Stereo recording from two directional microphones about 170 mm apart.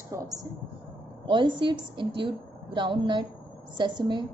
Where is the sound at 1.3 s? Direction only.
30° right (ahead or behind).